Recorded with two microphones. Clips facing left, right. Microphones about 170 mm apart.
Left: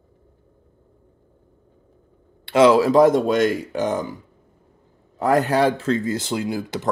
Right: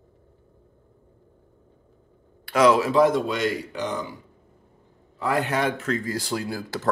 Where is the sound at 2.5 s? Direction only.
25° left (ahead or behind); by 4.0 s 45° left (ahead or behind).